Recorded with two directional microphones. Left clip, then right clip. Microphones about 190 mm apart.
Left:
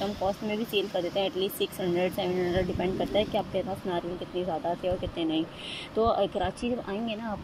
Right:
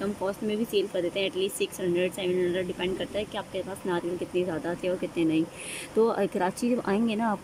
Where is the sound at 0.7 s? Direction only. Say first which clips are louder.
Even; 60° right (ahead or behind).